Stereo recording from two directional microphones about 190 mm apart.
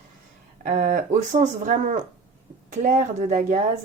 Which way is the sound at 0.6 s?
45° right (ahead or behind).